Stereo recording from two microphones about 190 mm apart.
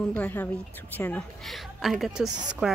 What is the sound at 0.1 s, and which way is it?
A woman's voice, 10° left (ahead or behind).